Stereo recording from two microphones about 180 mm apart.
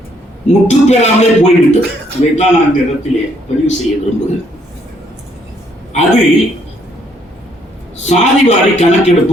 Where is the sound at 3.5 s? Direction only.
40° left (ahead or behind).